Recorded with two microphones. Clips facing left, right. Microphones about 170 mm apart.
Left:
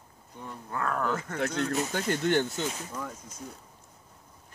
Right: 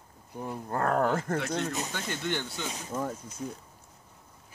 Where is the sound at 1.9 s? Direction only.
45° left (ahead or behind).